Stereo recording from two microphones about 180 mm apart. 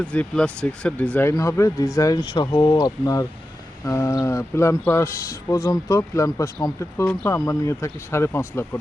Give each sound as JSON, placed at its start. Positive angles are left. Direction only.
{"t": 0.0, "sound": "speech", "side_deg": 5}